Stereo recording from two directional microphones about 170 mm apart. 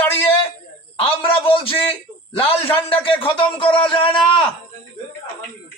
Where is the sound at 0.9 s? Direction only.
30° left (ahead or behind).